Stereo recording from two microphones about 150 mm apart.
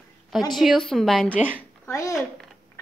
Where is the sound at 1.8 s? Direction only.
20° left (ahead or behind).